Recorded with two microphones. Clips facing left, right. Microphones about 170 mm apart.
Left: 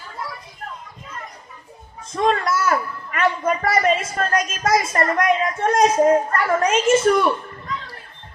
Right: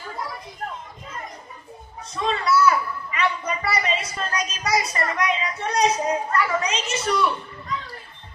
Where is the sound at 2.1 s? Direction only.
50° left (ahead or behind).